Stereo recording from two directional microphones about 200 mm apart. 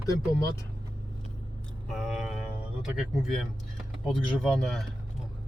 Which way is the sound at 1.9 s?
Centre (ahead or behind).